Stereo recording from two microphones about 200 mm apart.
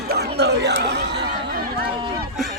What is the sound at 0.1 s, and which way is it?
Chatter, 55° right (ahead or behind).